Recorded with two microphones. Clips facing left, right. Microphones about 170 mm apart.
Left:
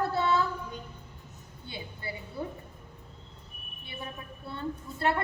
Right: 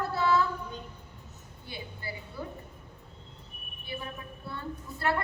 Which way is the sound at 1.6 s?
25° left (ahead or behind).